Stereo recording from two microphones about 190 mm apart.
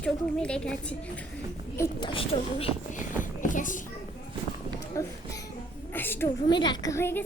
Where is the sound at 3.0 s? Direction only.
45° left (ahead or behind).